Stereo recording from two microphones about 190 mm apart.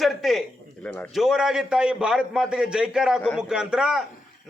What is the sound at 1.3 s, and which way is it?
A man's voice, 5° right (ahead or behind).